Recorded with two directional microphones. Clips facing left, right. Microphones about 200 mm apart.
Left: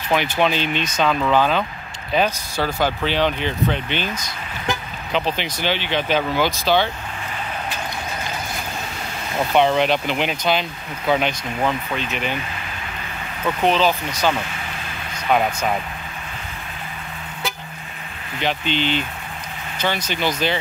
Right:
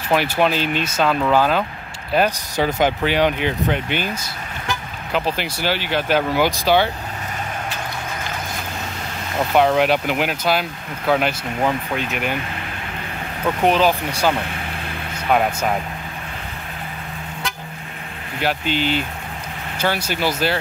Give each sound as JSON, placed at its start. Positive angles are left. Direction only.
{"t": 0.1, "sound": "speech", "side_deg": -5}
{"t": 9.5, "sound": "speech", "side_deg": -5}
{"t": 13.6, "sound": "speech", "side_deg": -10}
{"t": 18.4, "sound": "speech", "side_deg": -5}